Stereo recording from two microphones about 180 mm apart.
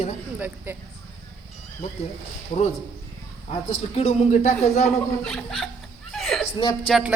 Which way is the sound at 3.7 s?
35° left (ahead or behind).